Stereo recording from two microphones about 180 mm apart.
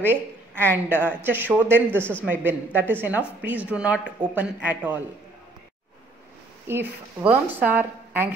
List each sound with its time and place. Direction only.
0.7 s a woman's voice: 10° right (ahead or behind)
6.7 s a woman's voice: 10° right (ahead or behind)